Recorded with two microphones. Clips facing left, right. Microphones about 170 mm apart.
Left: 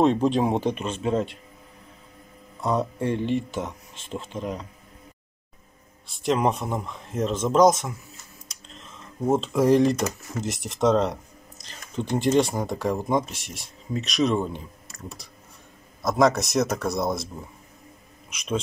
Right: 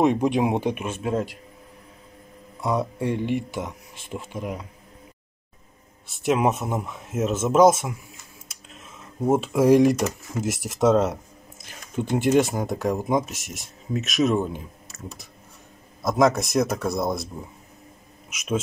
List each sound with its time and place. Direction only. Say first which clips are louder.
0.0 s speech: even; 15° right (ahead or behind)
2.6 s speech: even; 10° right (ahead or behind)
6.0 s speech: right 1 dB; 5° right (ahead or behind)
18.3 s speech: right 2 dB; centre (ahead or behind)